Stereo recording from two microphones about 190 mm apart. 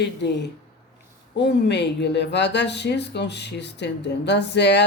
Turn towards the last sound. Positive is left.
turn(degrees=65)  # may be behind; listen again after turning